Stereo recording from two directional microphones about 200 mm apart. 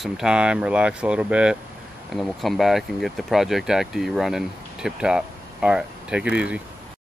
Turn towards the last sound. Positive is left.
turn(degrees=-5)  # may be behind; listen again after turning